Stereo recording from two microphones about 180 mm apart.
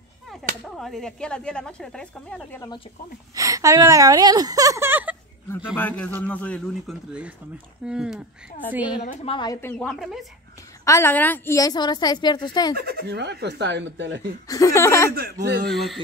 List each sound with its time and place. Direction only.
0.7 s speech: centre (ahead or behind)
3.3 s a woman's voice: 20° right (ahead or behind)
5.8 s a man's voice: 10° left (ahead or behind)
9.0 s a woman's voice: 30° left (ahead or behind)
9.5 s speech: 10° left (ahead or behind)
10.9 s a woman's voice: 15° left (ahead or behind)
12.7 s speech: 60° right (ahead or behind); by 14.2 s 90° right
14.5 s a man's voice: 20° left (ahead or behind)
15.1 s speech: 65° right (ahead or behind)
15.7 s speech: centre (ahead or behind)